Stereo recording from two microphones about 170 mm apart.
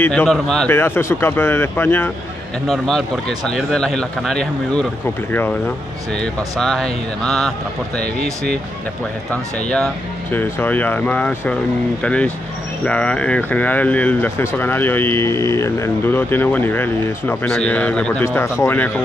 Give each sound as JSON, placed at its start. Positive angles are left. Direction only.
{"t": 0.0, "sound": "speech", "side_deg": 10}
{"t": 2.7, "sound": "speech", "side_deg": 5}
{"t": 6.6, "sound": "speech", "side_deg": 0}
{"t": 9.3, "sound": "speech", "side_deg": 5}